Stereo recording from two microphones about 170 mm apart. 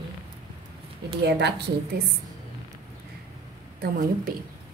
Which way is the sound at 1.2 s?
80° right.